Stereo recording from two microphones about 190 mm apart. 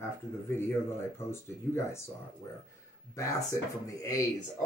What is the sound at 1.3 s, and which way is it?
Speech, 15° left (ahead or behind).